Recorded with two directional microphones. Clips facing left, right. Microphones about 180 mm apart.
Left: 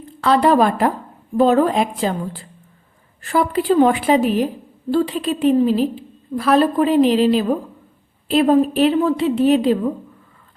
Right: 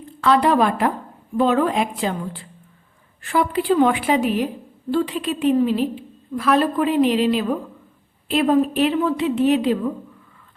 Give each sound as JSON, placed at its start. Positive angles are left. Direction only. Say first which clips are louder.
{"t": 0.2, "sound": "a woman's voice", "louder": "left 2 dB", "side_deg": 35}